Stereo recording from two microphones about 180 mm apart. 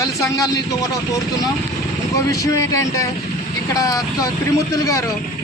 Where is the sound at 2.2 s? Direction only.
20° left (ahead or behind).